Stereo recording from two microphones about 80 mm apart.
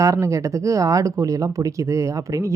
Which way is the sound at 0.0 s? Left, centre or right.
Right.